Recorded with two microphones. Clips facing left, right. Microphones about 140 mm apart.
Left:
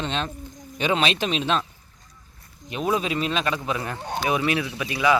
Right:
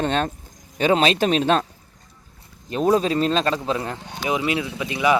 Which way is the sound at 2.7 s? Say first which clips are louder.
Right 6 dB; 35° right (ahead or behind).